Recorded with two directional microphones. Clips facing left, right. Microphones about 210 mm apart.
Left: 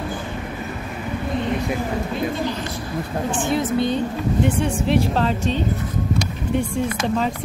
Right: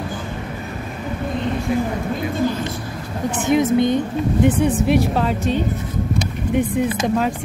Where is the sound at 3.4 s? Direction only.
20° right (ahead or behind).